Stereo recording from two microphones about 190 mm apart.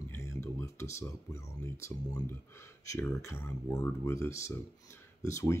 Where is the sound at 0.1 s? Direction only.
15° left (ahead or behind).